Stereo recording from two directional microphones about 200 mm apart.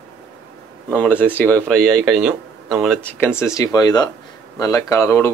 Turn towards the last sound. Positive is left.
turn(degrees=15)  # may be behind; listen again after turning